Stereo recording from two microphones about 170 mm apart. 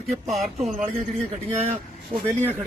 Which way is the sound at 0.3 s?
Centre (ahead or behind).